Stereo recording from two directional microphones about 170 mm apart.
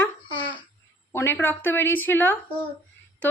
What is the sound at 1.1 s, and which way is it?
A woman's voice, 15° left (ahead or behind).